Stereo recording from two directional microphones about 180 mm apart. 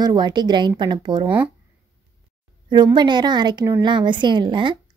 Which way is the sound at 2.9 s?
25° right (ahead or behind).